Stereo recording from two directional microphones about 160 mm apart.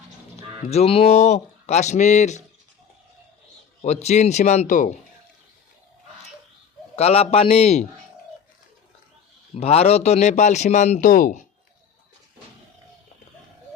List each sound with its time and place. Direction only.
0.7 s speech: 40° left (ahead or behind)
3.8 s speech: 45° left (ahead or behind)
6.9 s a man's voice: 40° left (ahead or behind)
9.6 s speech: 40° left (ahead or behind)